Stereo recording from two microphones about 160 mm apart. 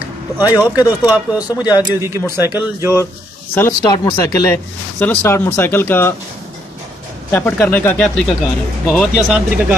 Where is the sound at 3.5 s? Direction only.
15° left (ahead or behind).